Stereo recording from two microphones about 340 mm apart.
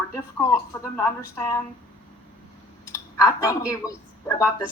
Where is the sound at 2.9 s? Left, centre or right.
Centre.